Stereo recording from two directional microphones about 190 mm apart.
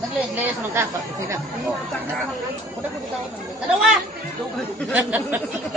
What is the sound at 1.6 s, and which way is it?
Speech, centre (ahead or behind).